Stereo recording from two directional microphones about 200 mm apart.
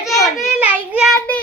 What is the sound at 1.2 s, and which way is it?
Speech, 10° left (ahead or behind).